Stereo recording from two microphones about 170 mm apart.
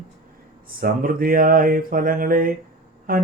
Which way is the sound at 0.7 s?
55° right (ahead or behind).